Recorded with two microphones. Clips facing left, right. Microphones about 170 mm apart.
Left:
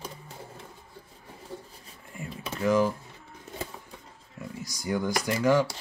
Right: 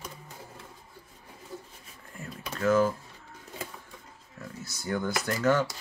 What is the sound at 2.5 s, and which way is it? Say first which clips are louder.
Speech: even; 10° left (ahead or behind).